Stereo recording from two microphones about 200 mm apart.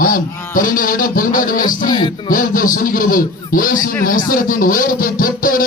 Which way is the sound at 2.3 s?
45° left (ahead or behind).